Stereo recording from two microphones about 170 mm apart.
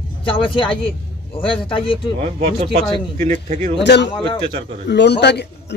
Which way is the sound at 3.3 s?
45° right (ahead or behind).